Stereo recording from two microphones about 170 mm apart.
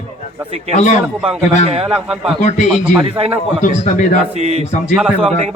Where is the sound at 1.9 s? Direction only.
5° right (ahead or behind).